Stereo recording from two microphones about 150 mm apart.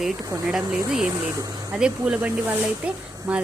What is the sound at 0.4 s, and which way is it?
Speech, 5° right (ahead or behind).